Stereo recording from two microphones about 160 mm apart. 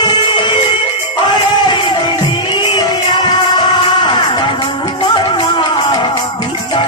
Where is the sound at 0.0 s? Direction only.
30° left (ahead or behind).